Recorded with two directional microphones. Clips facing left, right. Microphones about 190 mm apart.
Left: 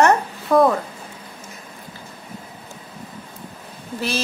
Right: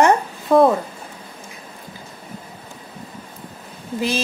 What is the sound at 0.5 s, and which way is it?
Speech, 20° right (ahead or behind).